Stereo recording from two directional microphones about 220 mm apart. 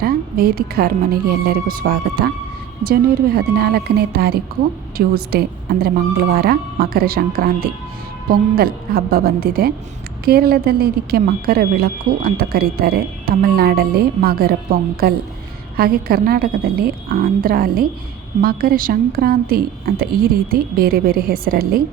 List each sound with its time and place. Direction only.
0.0 s speech: 45° right (ahead or behind)